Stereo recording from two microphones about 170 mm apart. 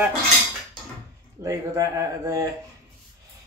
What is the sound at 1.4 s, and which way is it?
Speech, 20° right (ahead or behind).